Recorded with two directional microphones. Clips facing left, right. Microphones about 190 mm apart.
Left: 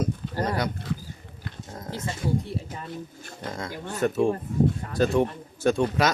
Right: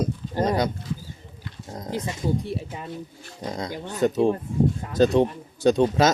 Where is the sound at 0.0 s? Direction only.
20° right (ahead or behind).